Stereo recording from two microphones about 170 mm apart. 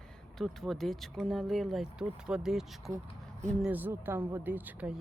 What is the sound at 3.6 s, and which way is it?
Speech, 10° right (ahead or behind).